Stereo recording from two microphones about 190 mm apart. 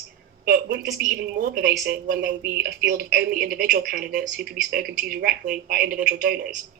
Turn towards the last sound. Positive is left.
turn(degrees=-50)  # may be behind; listen again after turning